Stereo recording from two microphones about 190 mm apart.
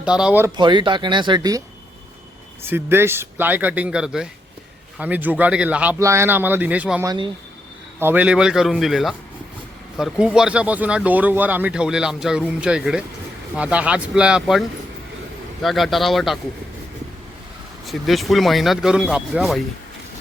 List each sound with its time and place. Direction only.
0.0 s speech: 5° right (ahead or behind)
0.5 s speech: 25° right (ahead or behind)
2.6 s speech: 10° right (ahead or behind)
7.0 s speech: 20° right (ahead or behind); by 14.6 s 5° right (ahead or behind)
15.6 s speech: centre (ahead or behind)
17.8 s speech: centre (ahead or behind)